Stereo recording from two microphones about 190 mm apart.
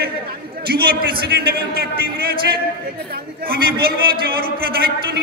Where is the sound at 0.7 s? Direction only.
55° right (ahead or behind).